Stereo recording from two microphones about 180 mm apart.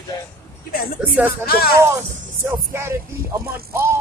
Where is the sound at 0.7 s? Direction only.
55° left (ahead or behind).